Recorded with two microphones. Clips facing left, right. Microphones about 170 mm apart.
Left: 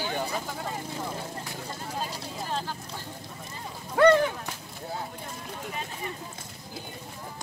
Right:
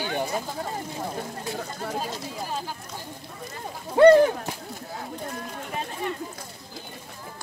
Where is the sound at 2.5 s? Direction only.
10° right (ahead or behind).